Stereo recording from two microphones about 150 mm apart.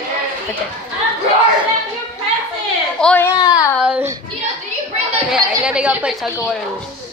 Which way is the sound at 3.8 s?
10° right (ahead or behind).